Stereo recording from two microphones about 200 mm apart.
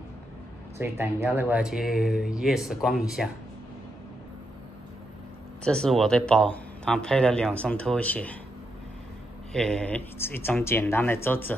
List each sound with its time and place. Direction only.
0.7 s speech: 15° right (ahead or behind)
5.6 s speech: 5° left (ahead or behind)
9.5 s speech: centre (ahead or behind)